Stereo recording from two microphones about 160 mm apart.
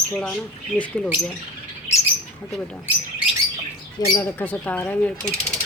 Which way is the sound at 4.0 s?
25° left (ahead or behind).